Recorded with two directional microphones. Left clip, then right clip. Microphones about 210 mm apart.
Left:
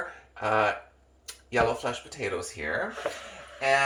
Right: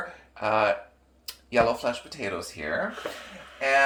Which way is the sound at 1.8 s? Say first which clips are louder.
Right 3 dB; 25° right (ahead or behind).